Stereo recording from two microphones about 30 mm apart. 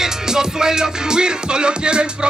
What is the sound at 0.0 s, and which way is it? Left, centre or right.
Music, centre.